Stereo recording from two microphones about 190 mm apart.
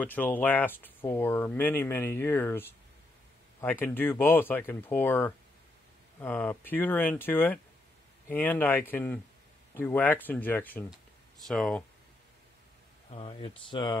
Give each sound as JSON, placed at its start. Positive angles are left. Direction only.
{"t": 0.0, "sound": "speech", "side_deg": 10}
{"t": 13.1, "sound": "speech", "side_deg": 30}